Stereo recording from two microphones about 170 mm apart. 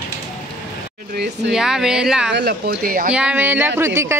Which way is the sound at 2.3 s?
75° right (ahead or behind).